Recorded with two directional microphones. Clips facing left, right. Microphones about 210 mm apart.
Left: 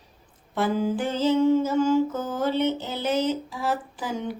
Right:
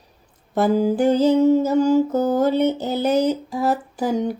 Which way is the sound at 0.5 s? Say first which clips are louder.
Right 6 dB; 40° right (ahead or behind).